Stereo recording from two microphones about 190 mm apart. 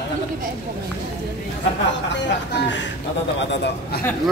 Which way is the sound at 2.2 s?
70° left (ahead or behind).